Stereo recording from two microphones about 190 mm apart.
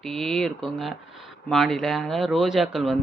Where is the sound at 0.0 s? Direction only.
Centre (ahead or behind).